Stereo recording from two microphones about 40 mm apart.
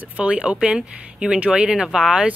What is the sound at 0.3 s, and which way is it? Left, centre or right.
Speech, right.